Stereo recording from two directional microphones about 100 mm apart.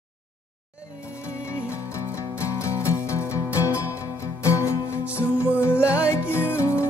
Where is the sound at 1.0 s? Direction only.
30° left (ahead or behind).